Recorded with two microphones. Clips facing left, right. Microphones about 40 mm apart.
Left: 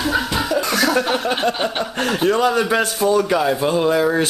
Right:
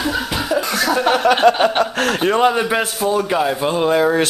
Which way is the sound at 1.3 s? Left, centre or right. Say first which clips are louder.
Right 7 dB; right.